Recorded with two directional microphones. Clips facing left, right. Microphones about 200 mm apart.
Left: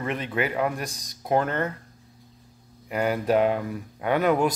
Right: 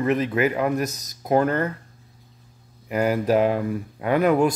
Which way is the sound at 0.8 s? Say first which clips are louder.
Right 7 dB; 30° left (ahead or behind).